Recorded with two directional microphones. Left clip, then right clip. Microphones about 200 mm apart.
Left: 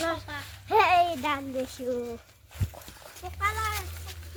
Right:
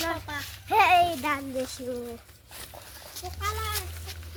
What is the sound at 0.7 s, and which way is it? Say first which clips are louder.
Speech: right 1 dB; 45° left (ahead or behind).